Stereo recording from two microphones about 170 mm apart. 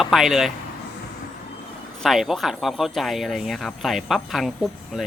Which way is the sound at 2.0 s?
Centre (ahead or behind).